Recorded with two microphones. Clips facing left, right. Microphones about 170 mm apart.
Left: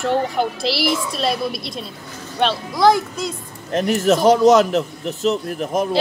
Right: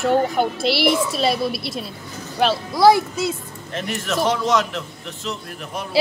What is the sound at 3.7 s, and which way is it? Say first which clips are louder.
A man's voice: left 9 dB; 40° left (ahead or behind).